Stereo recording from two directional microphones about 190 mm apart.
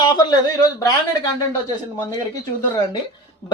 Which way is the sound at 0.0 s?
20° left (ahead or behind).